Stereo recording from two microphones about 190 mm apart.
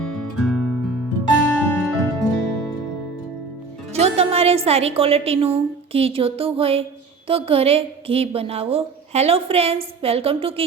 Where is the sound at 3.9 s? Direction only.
35° right (ahead or behind).